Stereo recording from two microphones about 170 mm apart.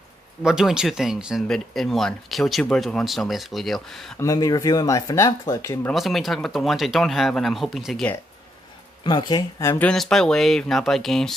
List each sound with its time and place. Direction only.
0.4 s speech: 5° right (ahead or behind)
4.2 s speech: 20° left (ahead or behind)
5.9 s speech: centre (ahead or behind)
9.0 s speech: 25° left (ahead or behind); by 11.3 s centre (ahead or behind)